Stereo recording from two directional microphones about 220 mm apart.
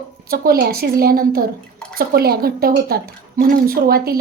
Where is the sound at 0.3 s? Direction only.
45° right (ahead or behind).